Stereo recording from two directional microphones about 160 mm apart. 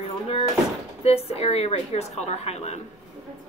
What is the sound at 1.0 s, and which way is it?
A woman's voice, 40° left (ahead or behind).